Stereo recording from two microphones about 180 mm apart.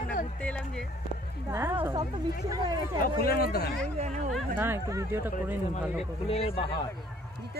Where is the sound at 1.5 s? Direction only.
15° right (ahead or behind).